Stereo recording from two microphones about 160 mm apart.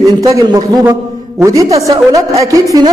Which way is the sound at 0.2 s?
20° right (ahead or behind).